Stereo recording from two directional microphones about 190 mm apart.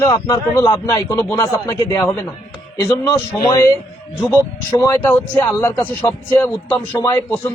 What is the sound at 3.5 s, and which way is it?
Speech, 15° left (ahead or behind).